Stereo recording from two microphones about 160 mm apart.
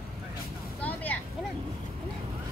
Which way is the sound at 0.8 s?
10° left (ahead or behind).